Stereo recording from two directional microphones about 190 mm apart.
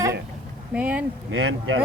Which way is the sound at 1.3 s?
90° right.